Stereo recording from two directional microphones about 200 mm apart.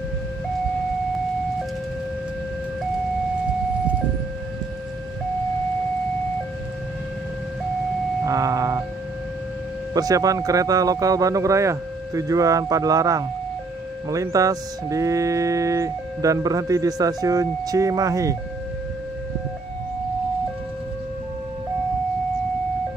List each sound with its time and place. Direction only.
8.3 s ice cream truck: 15° right (ahead or behind)
9.9 s speech: 20° right (ahead or behind)